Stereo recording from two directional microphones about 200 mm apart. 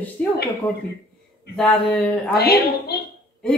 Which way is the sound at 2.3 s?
50° left (ahead or behind).